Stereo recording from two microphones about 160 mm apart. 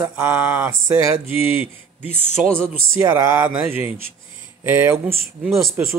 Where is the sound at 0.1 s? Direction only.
10° right (ahead or behind).